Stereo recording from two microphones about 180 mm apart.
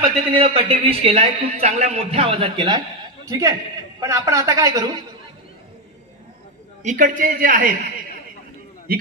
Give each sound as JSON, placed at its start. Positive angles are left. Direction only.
{"t": 0.0, "sound": "a man's voice", "side_deg": -30}
{"t": 6.8, "sound": "a man's voice", "side_deg": -45}